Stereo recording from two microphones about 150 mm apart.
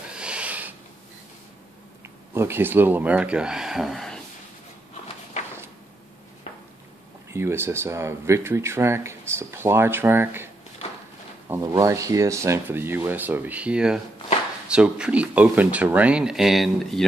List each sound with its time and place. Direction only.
0.1 s snort: 5° right (ahead or behind)
2.3 s speech: 15° right (ahead or behind); by 4.2 s centre (ahead or behind)
7.3 s speech: 15° right (ahead or behind); by 17.0 s centre (ahead or behind)